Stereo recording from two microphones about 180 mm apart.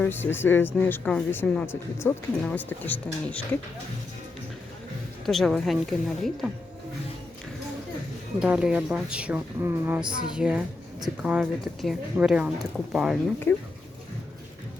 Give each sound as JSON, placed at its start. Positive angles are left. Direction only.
{"t": 0.0, "sound": "speech", "side_deg": 10}
{"t": 5.2, "sound": "speech", "side_deg": 0}
{"t": 8.4, "sound": "speech", "side_deg": -5}
{"t": 13.5, "sound": "speech", "side_deg": 10}